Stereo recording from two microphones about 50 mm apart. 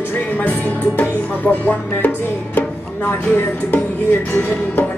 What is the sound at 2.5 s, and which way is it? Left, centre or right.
Speech, left.